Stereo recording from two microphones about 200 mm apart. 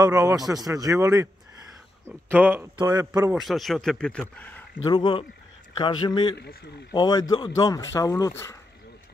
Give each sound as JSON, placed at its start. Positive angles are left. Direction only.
{"t": 0.0, "sound": "a man's voice", "side_deg": -15}
{"t": 2.8, "sound": "speech", "side_deg": -20}
{"t": 3.3, "sound": "speech", "side_deg": 0}
{"t": 4.8, "sound": "a man's voice", "side_deg": 20}